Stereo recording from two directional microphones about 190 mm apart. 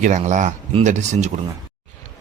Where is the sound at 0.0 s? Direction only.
40° right (ahead or behind).